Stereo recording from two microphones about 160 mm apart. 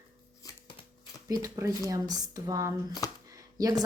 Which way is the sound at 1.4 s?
20° right (ahead or behind).